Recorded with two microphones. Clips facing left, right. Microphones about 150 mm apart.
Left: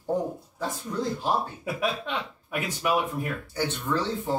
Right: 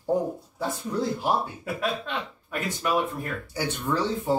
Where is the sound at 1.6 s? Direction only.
10° left (ahead or behind).